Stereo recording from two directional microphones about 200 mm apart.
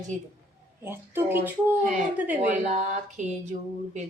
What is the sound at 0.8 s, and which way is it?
Speech, 10° right (ahead or behind).